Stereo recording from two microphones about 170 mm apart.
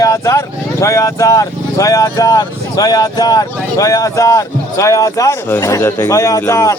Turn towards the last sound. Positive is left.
turn(degrees=15)  # may be behind; listen again after turning